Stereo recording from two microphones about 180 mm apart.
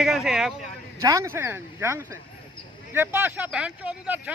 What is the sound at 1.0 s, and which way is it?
Speech, 20° right (ahead or behind).